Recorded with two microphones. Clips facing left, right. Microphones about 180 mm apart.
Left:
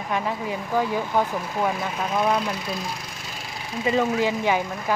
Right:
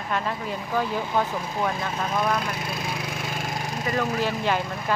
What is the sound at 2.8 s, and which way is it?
Splinter, 60° right (ahead or behind).